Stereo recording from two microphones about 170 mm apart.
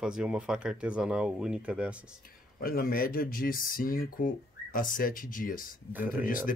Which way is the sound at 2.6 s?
55° left (ahead or behind).